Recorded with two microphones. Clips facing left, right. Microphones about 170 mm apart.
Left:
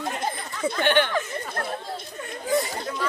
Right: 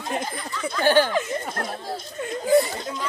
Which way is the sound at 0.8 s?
35° right (ahead or behind).